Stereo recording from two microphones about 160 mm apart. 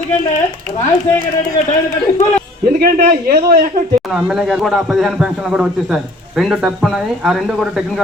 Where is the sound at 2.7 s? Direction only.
70° right (ahead or behind).